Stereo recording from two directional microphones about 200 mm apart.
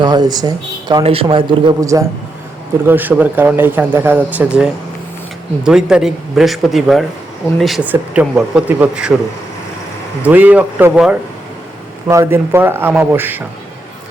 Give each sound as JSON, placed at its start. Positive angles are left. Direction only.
{"t": 0.0, "sound": "a man's voice", "side_deg": -20}
{"t": 10.2, "sound": "speech", "side_deg": -10}